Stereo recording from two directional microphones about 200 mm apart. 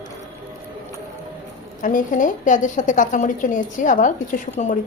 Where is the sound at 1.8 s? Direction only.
40° left (ahead or behind).